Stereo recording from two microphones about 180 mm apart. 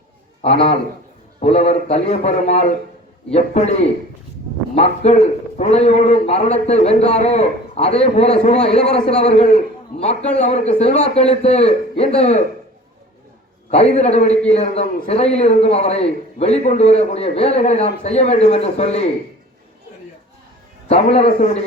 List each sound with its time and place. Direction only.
0.4 s a man's voice: 30° left (ahead or behind)
13.7 s a man's voice: 35° left (ahead or behind)
20.8 s a man's voice: 35° left (ahead or behind)